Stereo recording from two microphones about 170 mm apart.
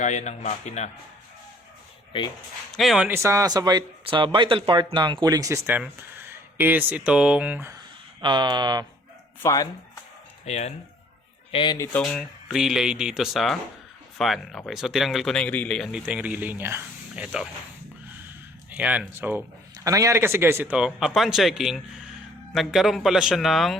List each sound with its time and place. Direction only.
0.0 s speech: 45° left (ahead or behind)
2.7 s speech: centre (ahead or behind)
3.1 s speech: 15° right (ahead or behind)
8.2 s speech: 25° right (ahead or behind)
9.4 s speech: 20° left (ahead or behind)
10.4 s speech: 40° left (ahead or behind)
11.5 s speech: 30° left (ahead or behind)
12.0 s speech: centre (ahead or behind)
18.7 s speech: 10° right (ahead or behind)